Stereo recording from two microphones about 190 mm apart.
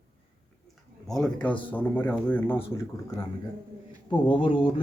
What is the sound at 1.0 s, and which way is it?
Speech, centre (ahead or behind).